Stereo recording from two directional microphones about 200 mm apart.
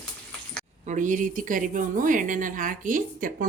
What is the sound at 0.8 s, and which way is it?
A woman's voice, 40° right (ahead or behind).